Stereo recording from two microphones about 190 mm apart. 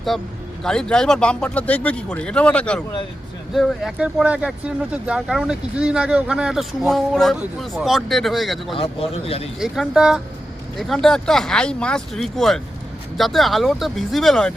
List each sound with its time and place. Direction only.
0.1 s speech: centre (ahead or behind)
8.7 s speech: 30° left (ahead or behind)
9.6 s speech: centre (ahead or behind)